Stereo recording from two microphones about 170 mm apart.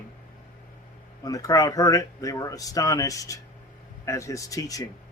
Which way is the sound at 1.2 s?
20° left (ahead or behind).